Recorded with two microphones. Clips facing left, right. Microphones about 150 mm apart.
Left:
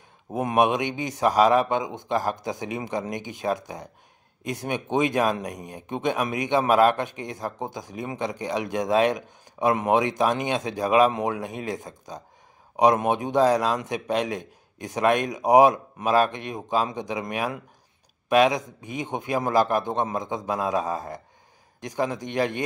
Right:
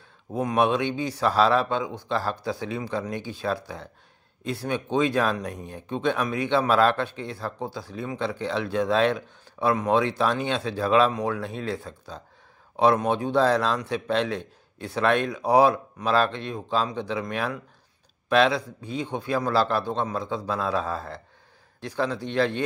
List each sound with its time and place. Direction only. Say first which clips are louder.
0.3 s speech: left 1 dB; 20° left (ahead or behind)